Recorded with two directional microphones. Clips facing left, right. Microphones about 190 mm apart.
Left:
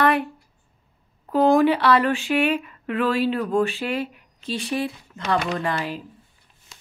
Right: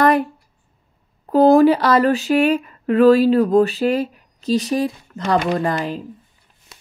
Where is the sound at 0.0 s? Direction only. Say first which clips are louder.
Right 5 dB; 40° right (ahead or behind).